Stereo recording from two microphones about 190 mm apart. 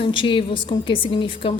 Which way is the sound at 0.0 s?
25° left (ahead or behind).